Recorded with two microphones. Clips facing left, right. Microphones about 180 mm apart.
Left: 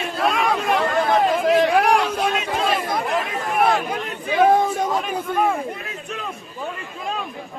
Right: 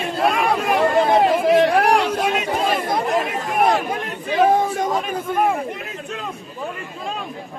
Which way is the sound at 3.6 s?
20° right (ahead or behind).